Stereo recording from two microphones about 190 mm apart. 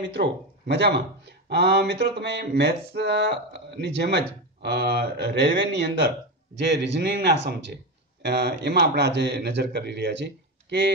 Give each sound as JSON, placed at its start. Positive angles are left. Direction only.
{"t": 0.1, "sound": "speech", "side_deg": -65}